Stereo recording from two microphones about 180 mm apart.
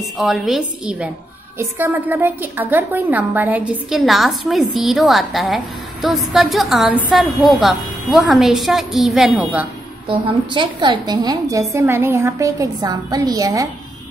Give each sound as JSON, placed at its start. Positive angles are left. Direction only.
{"t": 0.0, "sound": "a woman's voice", "side_deg": 0}
{"t": 10.0, "sound": "a woman's voice", "side_deg": -25}